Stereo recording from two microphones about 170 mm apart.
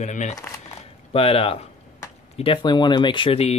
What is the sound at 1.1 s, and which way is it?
Speech, 35° left (ahead or behind).